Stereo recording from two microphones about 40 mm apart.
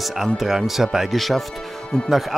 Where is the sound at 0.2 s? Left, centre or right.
Centre.